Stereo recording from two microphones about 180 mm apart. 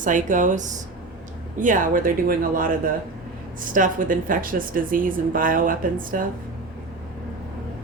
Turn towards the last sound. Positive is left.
turn(degrees=-50)  # may be behind; listen again after turning